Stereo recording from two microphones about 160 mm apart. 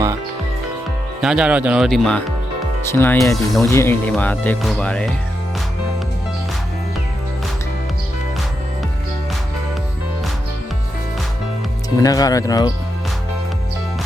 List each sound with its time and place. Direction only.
1.2 s speech: 5° right (ahead or behind)
2.9 s speech: 15° left (ahead or behind)
11.9 s speech: 20° left (ahead or behind)